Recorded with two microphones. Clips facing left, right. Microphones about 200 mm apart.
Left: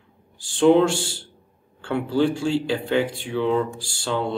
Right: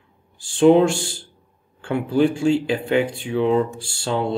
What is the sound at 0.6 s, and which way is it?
Speech, 15° right (ahead or behind).